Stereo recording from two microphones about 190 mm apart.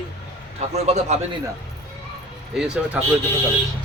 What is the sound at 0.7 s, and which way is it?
Speech, 35° right (ahead or behind).